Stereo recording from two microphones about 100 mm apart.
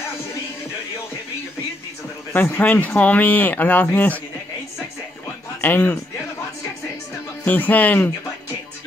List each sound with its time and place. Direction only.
2.3 s speech: 20° left (ahead or behind)
5.6 s speech: 15° left (ahead or behind)
7.4 s speech: 15° left (ahead or behind)